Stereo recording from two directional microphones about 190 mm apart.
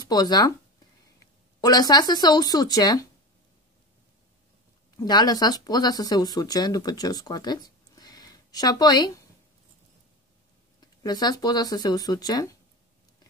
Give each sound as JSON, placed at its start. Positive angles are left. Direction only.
{"t": 0.1, "sound": "speech", "side_deg": 20}
{"t": 1.6, "sound": "speech", "side_deg": 20}
{"t": 4.9, "sound": "speech", "side_deg": 20}
{"t": 10.8, "sound": "speech", "side_deg": 20}